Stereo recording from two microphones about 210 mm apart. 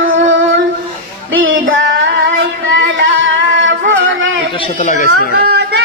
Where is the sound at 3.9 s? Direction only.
65° right (ahead or behind).